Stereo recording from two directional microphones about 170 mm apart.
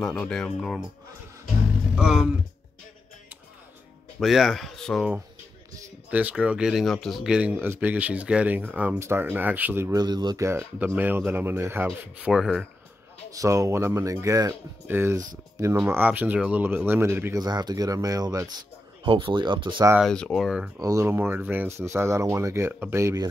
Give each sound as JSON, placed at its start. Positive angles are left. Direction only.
{"t": 0.0, "sound": "speech", "side_deg": 5}
{"t": 2.0, "sound": "speech", "side_deg": -5}
{"t": 4.2, "sound": "speech", "side_deg": 0}
{"t": 13.3, "sound": "speech", "side_deg": -20}
{"t": 19.0, "sound": "speech", "side_deg": -30}
{"t": 20.0, "sound": "speech", "side_deg": 5}
{"t": 20.8, "sound": "speech", "side_deg": -20}